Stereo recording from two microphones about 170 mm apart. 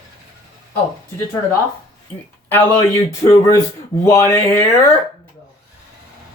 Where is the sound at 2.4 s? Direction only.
10° left (ahead or behind).